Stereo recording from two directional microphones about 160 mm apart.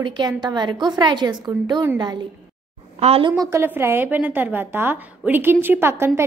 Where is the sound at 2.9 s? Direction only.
40° right (ahead or behind).